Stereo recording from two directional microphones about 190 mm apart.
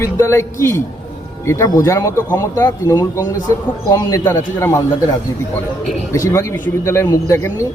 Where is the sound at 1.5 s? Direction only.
15° left (ahead or behind).